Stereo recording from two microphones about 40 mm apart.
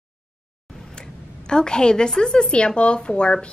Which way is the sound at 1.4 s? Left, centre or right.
Left.